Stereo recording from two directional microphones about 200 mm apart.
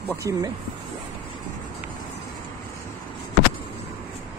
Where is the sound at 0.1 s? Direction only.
15° right (ahead or behind).